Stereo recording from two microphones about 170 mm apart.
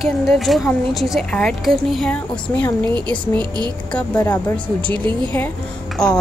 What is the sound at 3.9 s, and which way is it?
Speech, 10° left (ahead or behind).